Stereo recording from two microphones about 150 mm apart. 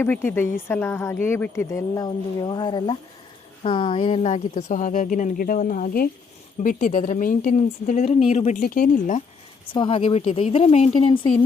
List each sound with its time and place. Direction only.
0.0 s speech: 15° left (ahead or behind); by 6.1 s 70° left (ahead or behind)
6.6 s speech: 55° left (ahead or behind)
8.6 s speech: 70° left (ahead or behind)
9.6 s speech: 35° left (ahead or behind)